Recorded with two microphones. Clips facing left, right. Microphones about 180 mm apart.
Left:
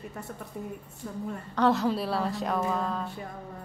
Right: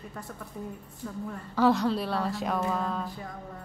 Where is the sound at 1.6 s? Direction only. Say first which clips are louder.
Right 1 dB; centre (ahead or behind).